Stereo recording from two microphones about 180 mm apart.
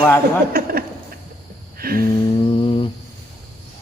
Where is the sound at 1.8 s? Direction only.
55° right (ahead or behind).